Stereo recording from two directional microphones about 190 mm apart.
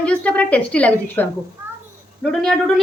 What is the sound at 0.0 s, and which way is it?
A woman's voice, 5° left (ahead or behind).